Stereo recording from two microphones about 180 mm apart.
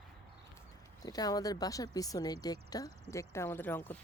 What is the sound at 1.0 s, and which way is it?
Speech, 20° left (ahead or behind).